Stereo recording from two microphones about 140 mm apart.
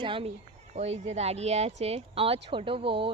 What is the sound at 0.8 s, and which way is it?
Speech, 50° right (ahead or behind).